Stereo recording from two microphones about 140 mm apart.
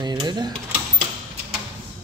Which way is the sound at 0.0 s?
30° right (ahead or behind).